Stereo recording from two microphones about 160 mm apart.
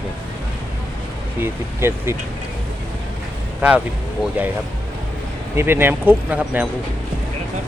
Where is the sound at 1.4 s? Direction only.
15° right (ahead or behind).